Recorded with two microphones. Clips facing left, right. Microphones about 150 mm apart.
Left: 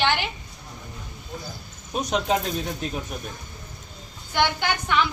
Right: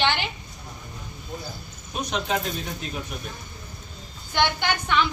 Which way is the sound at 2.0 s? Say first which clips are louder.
Left 3 dB; 40° left (ahead or behind).